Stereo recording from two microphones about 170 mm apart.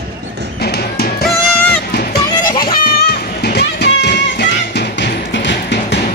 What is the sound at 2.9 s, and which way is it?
Music, 65° left (ahead or behind).